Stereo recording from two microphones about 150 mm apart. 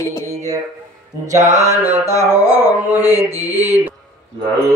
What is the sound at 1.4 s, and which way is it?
Mantra, 55° right (ahead or behind).